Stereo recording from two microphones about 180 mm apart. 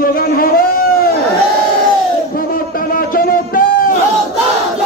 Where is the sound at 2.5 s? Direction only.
55° left (ahead or behind).